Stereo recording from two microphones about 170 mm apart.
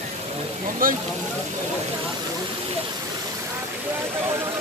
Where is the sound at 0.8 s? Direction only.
55° right (ahead or behind).